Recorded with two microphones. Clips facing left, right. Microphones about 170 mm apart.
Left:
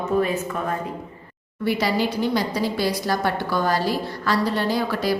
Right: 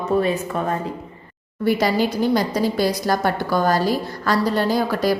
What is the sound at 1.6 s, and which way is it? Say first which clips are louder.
A woman's voice: right 3 dB; 45° right (ahead or behind).